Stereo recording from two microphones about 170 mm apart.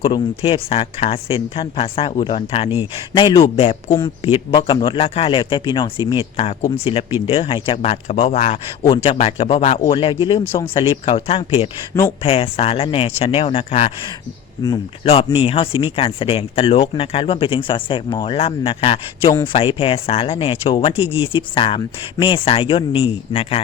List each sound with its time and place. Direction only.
0.0 s a man's voice: 30° left (ahead or behind)
3.8 s a man's voice: 25° left (ahead or behind)
10.4 s speech: 10° left (ahead or behind)
10.8 s speech: 35° left (ahead or behind)
15.0 s speech: 35° left (ahead or behind)